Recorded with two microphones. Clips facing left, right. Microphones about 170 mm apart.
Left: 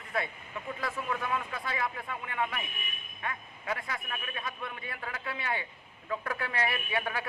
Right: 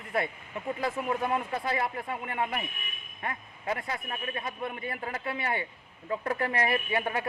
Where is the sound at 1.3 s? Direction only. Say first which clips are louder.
Right 5 dB; 40° right (ahead or behind).